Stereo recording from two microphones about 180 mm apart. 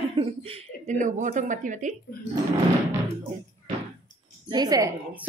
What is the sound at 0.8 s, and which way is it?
Speech, 45° right (ahead or behind).